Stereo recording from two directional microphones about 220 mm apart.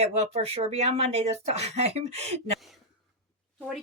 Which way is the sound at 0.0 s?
30° right (ahead or behind).